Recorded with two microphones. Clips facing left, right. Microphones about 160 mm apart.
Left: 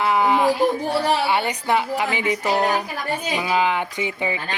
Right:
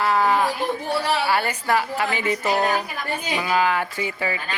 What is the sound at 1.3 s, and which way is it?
A man's voice, 20° left (ahead or behind).